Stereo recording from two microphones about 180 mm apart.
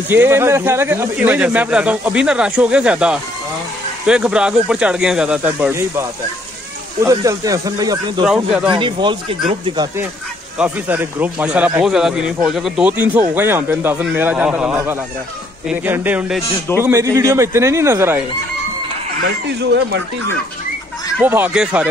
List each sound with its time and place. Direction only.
0.1 s speech: 10° right (ahead or behind); by 9.8 s 30° right (ahead or behind)
10.6 s speech: 10° right (ahead or behind)
16.8 s speech: 15° right (ahead or behind)
19.6 s speech: 75° right (ahead or behind)
21.2 s speech: 10° right (ahead or behind)